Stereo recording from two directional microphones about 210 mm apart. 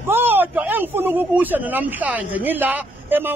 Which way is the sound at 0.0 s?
10° right (ahead or behind).